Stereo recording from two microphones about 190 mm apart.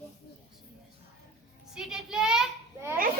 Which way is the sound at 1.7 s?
5° right (ahead or behind).